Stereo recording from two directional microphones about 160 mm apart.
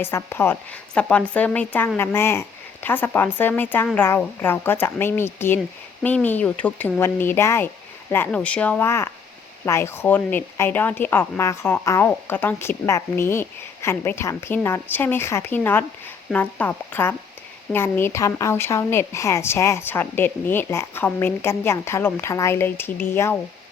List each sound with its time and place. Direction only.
0.0 s speech: 15° left (ahead or behind)